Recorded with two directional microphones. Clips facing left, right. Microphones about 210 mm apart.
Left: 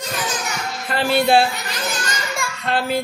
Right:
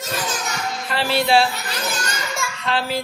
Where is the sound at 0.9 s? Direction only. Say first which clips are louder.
Left 2 dB; 50° left (ahead or behind).